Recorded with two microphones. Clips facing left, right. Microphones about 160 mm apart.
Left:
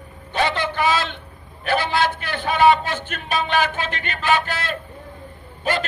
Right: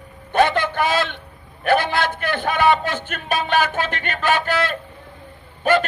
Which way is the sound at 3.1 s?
50° right (ahead or behind).